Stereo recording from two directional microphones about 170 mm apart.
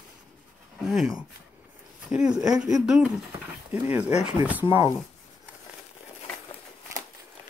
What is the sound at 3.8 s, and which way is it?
Speech, 10° right (ahead or behind).